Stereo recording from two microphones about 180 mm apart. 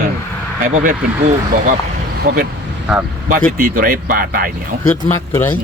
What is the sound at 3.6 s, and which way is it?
Speech, 50° right (ahead or behind).